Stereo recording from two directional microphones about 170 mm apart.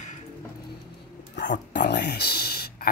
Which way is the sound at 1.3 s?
90° left.